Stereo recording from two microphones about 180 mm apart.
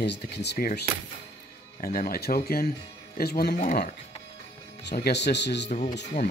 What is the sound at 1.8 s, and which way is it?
Speech, 55° left (ahead or behind).